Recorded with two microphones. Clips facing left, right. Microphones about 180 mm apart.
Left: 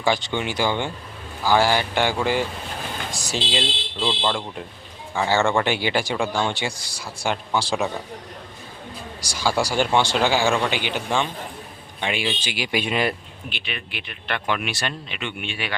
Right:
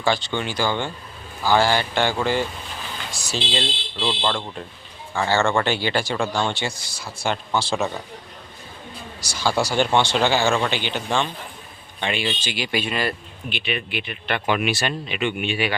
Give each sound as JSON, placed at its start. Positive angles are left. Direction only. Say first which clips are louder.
{"t": 0.0, "sound": "speech", "louder": "even", "side_deg": 15}
{"t": 9.2, "sound": "speech", "louder": "even", "side_deg": 10}
{"t": 13.5, "sound": "speech", "louder": "right 7 dB", "side_deg": -5}